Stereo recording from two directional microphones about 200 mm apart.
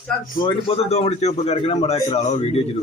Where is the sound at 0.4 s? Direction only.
30° left (ahead or behind).